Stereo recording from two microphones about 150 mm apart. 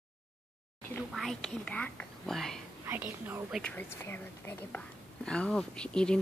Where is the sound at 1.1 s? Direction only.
Centre (ahead or behind).